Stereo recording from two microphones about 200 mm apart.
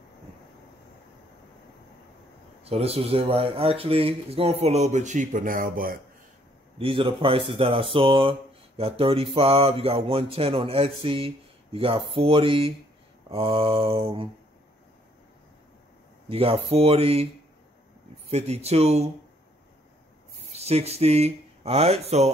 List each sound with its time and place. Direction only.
2.6 s speech: 30° right (ahead or behind)
6.8 s speech: 25° right (ahead or behind)
16.3 s speech: 30° right (ahead or behind)
18.3 s speech: 30° right (ahead or behind)
20.5 s speech: 30° right (ahead or behind)